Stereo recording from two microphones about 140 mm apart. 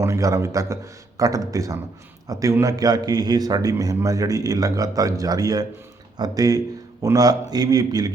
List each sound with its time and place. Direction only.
0.0 s a man's voice: 20° right (ahead or behind)